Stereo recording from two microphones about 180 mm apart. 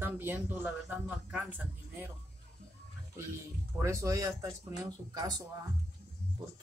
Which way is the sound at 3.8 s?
15° right (ahead or behind).